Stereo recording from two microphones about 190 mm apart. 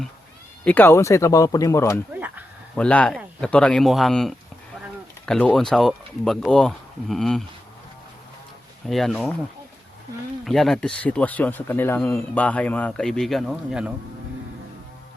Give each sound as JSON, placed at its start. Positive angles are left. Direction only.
{"t": 0.6, "sound": "speech", "side_deg": 10}
{"t": 2.1, "sound": "a sound", "side_deg": -10}
{"t": 2.7, "sound": "speech", "side_deg": 5}
{"t": 8.9, "sound": "speech", "side_deg": 0}
{"t": 10.4, "sound": "speech", "side_deg": 0}